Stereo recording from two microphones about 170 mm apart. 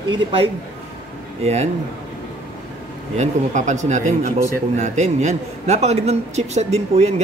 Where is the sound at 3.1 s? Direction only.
45° right (ahead or behind).